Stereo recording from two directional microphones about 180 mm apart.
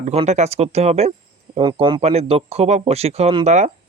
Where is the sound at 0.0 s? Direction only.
35° right (ahead or behind).